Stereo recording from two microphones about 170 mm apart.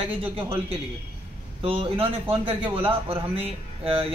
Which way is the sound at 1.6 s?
35° right (ahead or behind).